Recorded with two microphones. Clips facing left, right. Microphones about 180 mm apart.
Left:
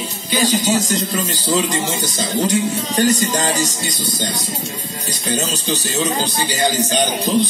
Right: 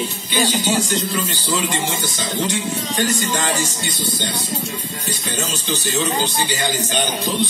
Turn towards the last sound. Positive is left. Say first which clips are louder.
# left 4 dB
turn(degrees=40)  # may be behind; listen again after turning